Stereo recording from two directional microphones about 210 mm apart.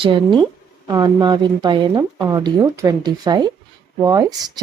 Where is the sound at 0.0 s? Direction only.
25° right (ahead or behind).